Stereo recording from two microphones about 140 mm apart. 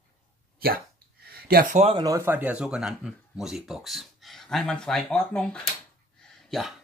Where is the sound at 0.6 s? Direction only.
90° right; by 1.9 s 65° right (ahead or behind).